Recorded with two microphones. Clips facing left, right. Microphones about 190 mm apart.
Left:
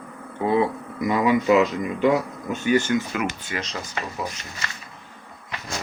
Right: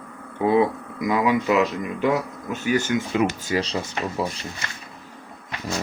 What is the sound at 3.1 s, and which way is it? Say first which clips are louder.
Speech: right 5 dB; 30° right (ahead or behind).